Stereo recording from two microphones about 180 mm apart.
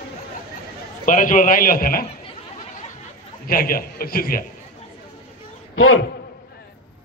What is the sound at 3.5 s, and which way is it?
A man's voice, 55° left (ahead or behind).